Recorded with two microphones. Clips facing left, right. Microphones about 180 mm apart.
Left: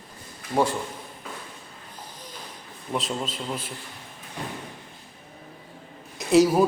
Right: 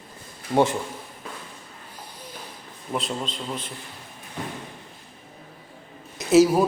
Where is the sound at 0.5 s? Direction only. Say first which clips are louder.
Right 3 dB; 20° right (ahead or behind).